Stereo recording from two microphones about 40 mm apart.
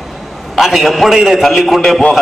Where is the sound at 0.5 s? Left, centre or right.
Centre.